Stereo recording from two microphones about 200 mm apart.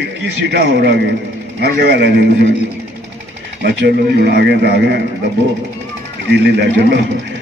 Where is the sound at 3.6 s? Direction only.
55° right (ahead or behind).